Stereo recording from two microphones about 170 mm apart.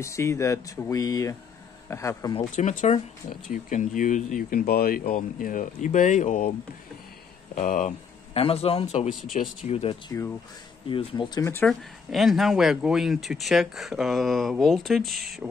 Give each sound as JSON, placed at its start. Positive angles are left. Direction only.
{"t": 0.0, "sound": "speech", "side_deg": 15}
{"t": 2.5, "sound": "speech", "side_deg": 45}
{"t": 7.5, "sound": "speech", "side_deg": 45}
{"t": 8.3, "sound": "a man's voice", "side_deg": 35}
{"t": 9.1, "sound": "speech", "side_deg": 0}
{"t": 9.7, "sound": "a man's voice", "side_deg": 40}
{"t": 10.0, "sound": "speech", "side_deg": 15}
{"t": 10.9, "sound": "speech", "side_deg": 30}
{"t": 12.1, "sound": "speech", "side_deg": 0}